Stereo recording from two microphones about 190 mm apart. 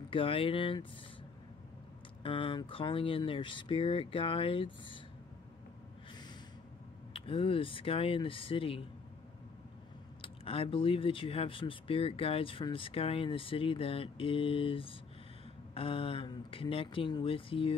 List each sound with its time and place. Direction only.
0.1 s speech: 30° left (ahead or behind)
2.2 s speech: 25° left (ahead or behind)
7.2 s speech: 30° left (ahead or behind)
10.2 s speech: 30° left (ahead or behind)